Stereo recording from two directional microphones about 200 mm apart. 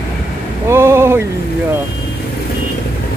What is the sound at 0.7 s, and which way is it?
Speech, 10° right (ahead or behind).